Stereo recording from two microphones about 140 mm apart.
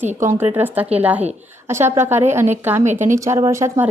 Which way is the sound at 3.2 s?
20° right (ahead or behind).